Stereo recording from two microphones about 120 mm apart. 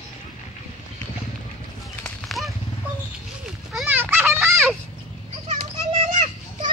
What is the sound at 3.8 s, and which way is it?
Children playing, 15° right (ahead or behind).